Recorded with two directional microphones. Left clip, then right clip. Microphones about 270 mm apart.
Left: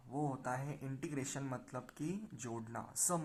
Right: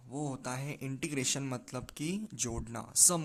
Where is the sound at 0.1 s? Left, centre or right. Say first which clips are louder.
Right 1 dB; right.